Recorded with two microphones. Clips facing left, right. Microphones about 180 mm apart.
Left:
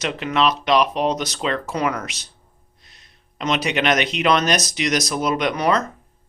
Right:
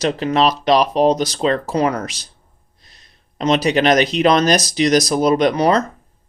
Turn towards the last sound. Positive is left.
turn(degrees=-35)  # may be behind; listen again after turning